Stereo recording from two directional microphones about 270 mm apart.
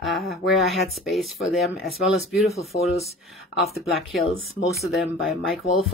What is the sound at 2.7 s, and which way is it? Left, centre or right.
Speech, left.